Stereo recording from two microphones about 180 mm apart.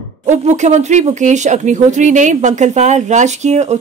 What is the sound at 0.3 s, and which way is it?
Speech, 40° right (ahead or behind).